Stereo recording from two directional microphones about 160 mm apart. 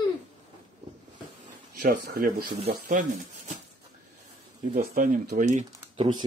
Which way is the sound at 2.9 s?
55° right (ahead or behind).